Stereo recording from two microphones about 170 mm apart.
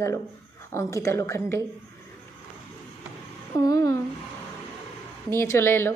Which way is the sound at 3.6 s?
20° left (ahead or behind).